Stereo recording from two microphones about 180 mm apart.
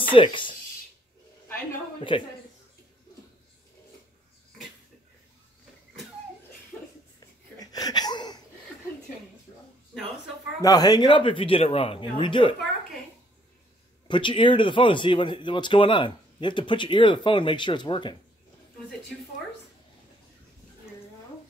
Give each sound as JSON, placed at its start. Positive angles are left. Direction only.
{"t": 0.1, "sound": "speech", "side_deg": 25}
{"t": 2.1, "sound": "speech", "side_deg": 30}
{"t": 7.5, "sound": "a sound", "side_deg": 20}
{"t": 10.6, "sound": "speech", "side_deg": 20}
{"t": 14.0, "sound": "speech", "side_deg": 25}